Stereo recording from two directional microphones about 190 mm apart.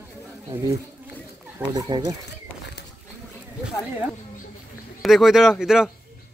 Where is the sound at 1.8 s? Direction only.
20° right (ahead or behind).